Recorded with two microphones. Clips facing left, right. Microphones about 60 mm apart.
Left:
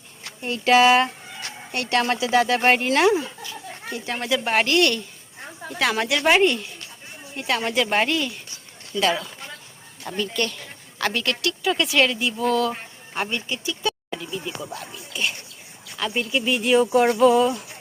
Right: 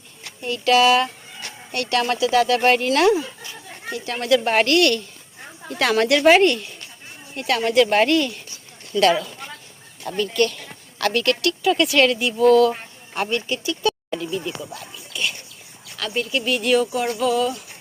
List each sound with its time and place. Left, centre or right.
0.4 s speech: left
4.4 s speech: centre
4.8 s speech: centre
7.3 s speech: centre
12.4 s speech: left
13.3 s speech: centre
13.8 s a sound: centre
14.9 s music: left
16.0 s speech: centre
16.8 s a sound: left
17.2 s speech: left